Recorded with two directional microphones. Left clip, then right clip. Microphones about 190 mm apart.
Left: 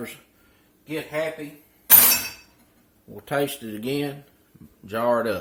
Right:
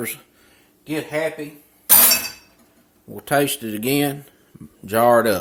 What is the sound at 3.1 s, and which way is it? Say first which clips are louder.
Speech: right 6 dB; 35° right (ahead or behind).